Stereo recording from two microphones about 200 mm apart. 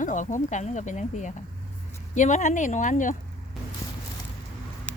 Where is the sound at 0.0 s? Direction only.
40° left (ahead or behind).